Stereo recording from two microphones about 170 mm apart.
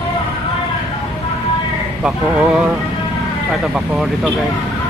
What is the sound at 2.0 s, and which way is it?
Speech, 5° right (ahead or behind).